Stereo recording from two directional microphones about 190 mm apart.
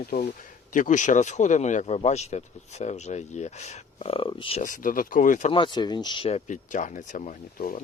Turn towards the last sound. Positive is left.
turn(degrees=40)  # may be behind; listen again after turning